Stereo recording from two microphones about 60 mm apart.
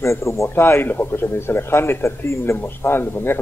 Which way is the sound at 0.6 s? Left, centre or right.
Left.